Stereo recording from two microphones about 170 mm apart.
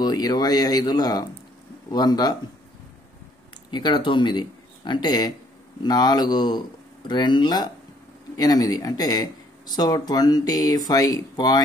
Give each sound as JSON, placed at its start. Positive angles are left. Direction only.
{"t": 0.0, "sound": "speech", "side_deg": 25}
{"t": 3.7, "sound": "speech", "side_deg": 25}